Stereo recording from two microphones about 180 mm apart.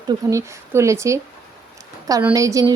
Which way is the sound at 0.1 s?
15° right (ahead or behind).